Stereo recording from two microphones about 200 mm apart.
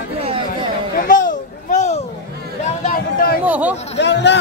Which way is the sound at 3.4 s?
5° right (ahead or behind).